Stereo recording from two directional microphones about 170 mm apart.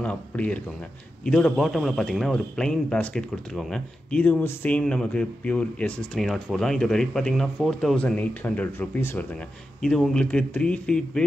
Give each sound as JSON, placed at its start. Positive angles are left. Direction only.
{"t": 0.0, "sound": "a man's voice", "side_deg": 5}